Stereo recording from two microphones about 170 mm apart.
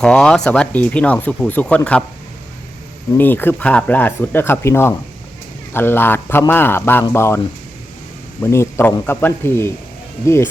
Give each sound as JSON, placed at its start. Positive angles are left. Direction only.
{"t": 0.0, "sound": "speech", "side_deg": 5}
{"t": 3.2, "sound": "speech", "side_deg": 10}